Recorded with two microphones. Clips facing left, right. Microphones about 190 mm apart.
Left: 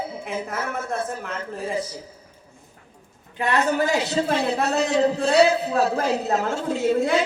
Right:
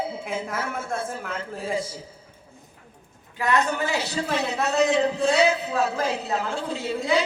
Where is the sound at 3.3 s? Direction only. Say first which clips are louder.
Left 2 dB; 30° left (ahead or behind).